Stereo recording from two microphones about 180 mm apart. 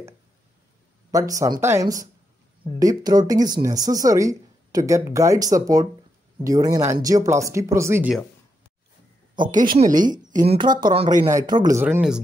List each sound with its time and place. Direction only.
1.1 s speech: 20° right (ahead or behind)
9.3 s speech: 25° right (ahead or behind)
9.6 s speech: 45° right (ahead or behind)
9.9 s speech: 25° right (ahead or behind)
10.3 s speech: 40° right (ahead or behind)
10.9 s speech: 25° right (ahead or behind)